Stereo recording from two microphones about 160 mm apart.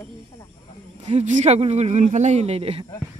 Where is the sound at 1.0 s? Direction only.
45° right (ahead or behind).